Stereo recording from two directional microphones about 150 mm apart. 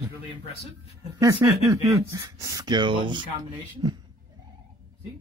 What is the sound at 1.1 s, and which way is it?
Speech, 20° right (ahead or behind).